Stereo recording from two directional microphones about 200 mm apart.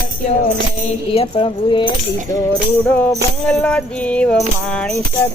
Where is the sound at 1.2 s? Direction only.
25° left (ahead or behind).